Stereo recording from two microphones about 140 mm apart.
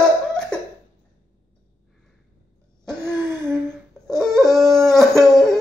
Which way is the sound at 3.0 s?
15° right (ahead or behind).